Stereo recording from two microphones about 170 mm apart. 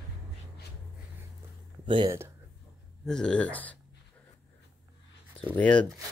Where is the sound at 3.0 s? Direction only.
5° left (ahead or behind).